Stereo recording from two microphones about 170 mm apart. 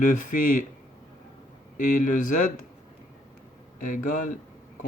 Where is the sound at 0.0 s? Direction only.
50° left (ahead or behind).